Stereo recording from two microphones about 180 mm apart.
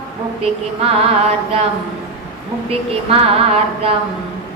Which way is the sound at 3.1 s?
35° right (ahead or behind).